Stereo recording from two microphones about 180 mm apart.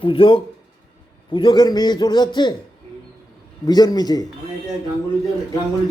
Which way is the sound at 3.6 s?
20° left (ahead or behind).